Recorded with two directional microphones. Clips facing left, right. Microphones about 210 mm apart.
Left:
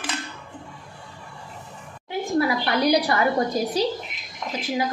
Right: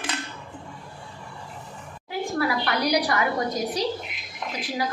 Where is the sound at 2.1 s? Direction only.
25° left (ahead or behind).